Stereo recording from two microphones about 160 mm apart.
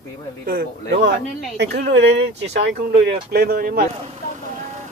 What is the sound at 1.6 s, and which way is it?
Speech, 90° right.